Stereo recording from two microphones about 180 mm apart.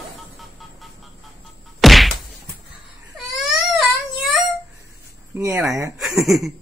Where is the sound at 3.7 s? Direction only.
Centre (ahead or behind).